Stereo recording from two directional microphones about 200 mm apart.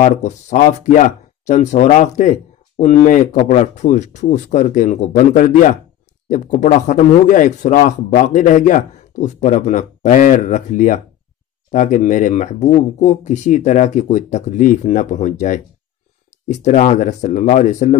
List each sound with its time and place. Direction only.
0.0 s speech: 35° left (ahead or behind)